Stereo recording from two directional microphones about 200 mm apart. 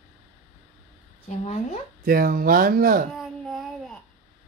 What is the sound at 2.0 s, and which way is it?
Speech, 45° right (ahead or behind).